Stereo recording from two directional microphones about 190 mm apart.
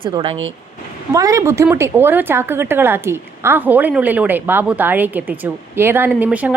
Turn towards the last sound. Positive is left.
turn(degrees=-5)  # may be behind; listen again after turning